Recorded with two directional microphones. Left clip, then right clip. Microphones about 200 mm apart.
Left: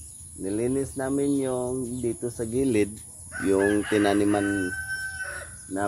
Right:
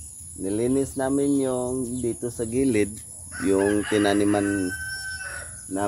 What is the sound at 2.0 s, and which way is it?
Fowl, 5° left (ahead or behind).